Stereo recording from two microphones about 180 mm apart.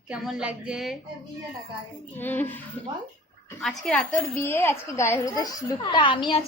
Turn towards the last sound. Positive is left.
turn(degrees=30)  # may be behind; listen again after turning